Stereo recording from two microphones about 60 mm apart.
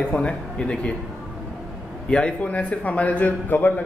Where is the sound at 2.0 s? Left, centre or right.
Centre.